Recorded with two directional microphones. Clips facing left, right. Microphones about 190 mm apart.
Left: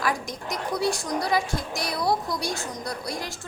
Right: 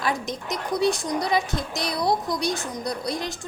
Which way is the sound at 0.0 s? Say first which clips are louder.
Right 1 dB; 20° right (ahead or behind).